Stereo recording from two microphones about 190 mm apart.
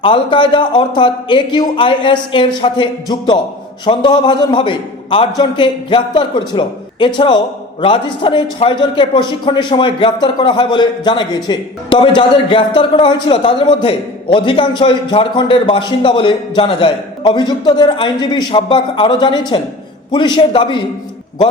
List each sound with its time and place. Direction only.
0.0 s a man's voice: 25° left (ahead or behind)